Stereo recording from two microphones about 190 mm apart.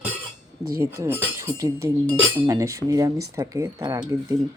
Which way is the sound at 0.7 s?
15° right (ahead or behind).